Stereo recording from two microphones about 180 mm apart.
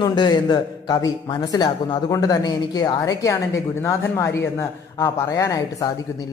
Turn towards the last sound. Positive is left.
turn(degrees=20)  # may be behind; listen again after turning